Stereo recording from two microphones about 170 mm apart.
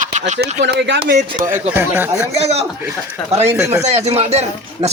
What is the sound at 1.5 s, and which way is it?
Speech, 10° right (ahead or behind).